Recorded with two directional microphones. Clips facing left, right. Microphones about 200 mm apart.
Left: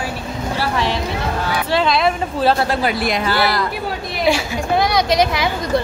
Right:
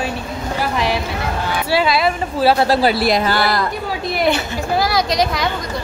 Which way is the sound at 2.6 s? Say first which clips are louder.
Right 4 dB; 35° right (ahead or behind).